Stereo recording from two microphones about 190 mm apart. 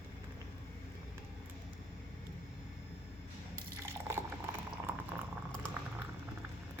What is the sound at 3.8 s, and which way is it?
Liquid, 15° right (ahead or behind).